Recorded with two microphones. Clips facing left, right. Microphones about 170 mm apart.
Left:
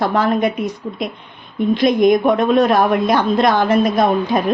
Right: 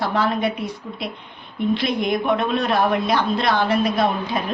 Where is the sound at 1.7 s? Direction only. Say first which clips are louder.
Left 9 dB; 45° left (ahead or behind).